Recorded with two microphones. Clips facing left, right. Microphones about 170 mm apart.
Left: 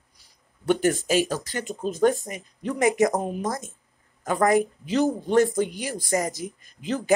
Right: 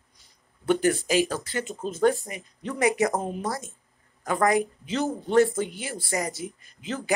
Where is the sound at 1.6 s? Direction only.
15° left (ahead or behind).